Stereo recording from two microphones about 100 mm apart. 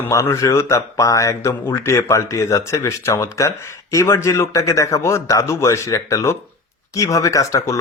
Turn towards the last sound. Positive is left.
turn(degrees=30)  # may be behind; listen again after turning